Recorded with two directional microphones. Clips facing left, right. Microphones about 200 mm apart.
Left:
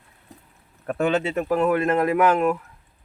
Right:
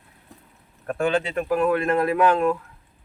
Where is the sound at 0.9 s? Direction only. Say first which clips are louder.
Left 1 dB; 25° left (ahead or behind).